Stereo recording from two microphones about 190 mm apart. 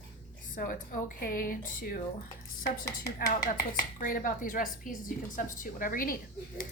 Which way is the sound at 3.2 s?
50° left (ahead or behind).